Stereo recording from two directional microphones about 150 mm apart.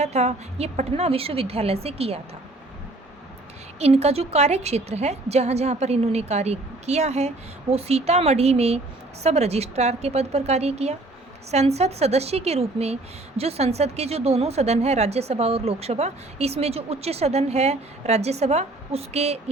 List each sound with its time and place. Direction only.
0.0 s a woman's voice: 45° right (ahead or behind)
3.8 s a woman's voice: 45° right (ahead or behind)